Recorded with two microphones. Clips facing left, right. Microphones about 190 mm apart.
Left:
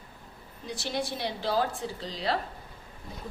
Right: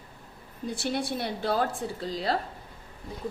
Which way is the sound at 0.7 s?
55° right (ahead or behind).